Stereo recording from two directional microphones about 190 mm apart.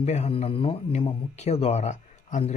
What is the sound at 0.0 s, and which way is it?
Speech, 35° left (ahead or behind).